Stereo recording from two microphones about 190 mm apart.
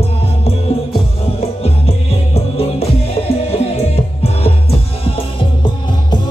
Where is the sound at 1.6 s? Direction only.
30° left (ahead or behind).